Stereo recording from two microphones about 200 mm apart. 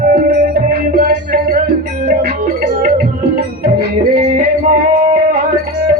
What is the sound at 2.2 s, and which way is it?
Music, 45° right (ahead or behind).